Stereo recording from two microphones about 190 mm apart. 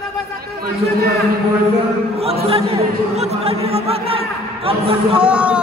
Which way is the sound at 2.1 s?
30° right (ahead or behind).